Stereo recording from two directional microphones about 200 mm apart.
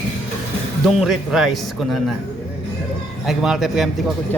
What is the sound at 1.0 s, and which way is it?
A man's voice, centre (ahead or behind).